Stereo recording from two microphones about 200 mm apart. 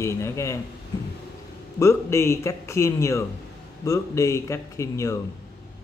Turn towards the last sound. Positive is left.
turn(degrees=15)  # may be behind; listen again after turning